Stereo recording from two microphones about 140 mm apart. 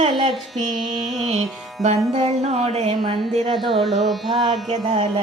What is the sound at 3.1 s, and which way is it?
Music, 35° right (ahead or behind).